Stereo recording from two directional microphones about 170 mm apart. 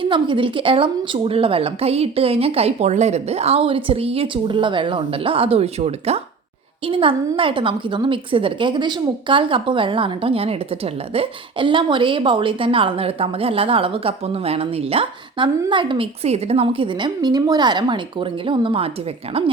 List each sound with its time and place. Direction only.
0.0 s a woman's voice: 30° right (ahead or behind)